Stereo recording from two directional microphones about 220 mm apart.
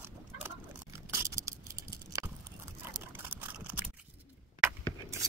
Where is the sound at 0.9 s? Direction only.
15° right (ahead or behind).